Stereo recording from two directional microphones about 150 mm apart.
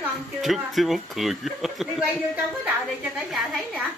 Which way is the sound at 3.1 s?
5° right (ahead or behind).